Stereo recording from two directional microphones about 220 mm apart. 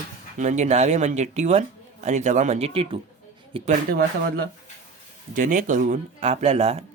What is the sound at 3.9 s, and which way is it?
Speech, 45° right (ahead or behind).